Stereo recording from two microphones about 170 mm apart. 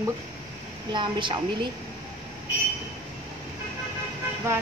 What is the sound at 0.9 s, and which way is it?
Speech, 30° right (ahead or behind).